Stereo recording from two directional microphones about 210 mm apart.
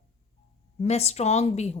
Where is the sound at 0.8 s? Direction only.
30° left (ahead or behind).